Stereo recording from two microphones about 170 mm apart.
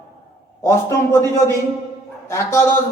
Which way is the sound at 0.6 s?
15° left (ahead or behind).